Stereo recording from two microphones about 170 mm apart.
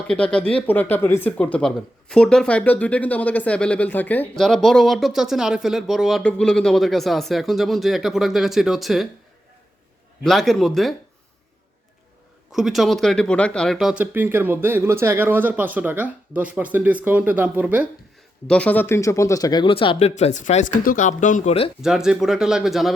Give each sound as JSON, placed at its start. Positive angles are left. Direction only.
{"t": 0.1, "sound": "speech", "side_deg": 5}
{"t": 10.2, "sound": "speech", "side_deg": 0}
{"t": 12.5, "sound": "speech", "side_deg": 0}
{"t": 18.4, "sound": "speech", "side_deg": 5}
{"t": 21.8, "sound": "speech", "side_deg": -5}